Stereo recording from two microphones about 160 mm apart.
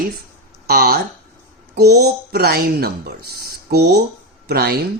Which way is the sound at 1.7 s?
90° right.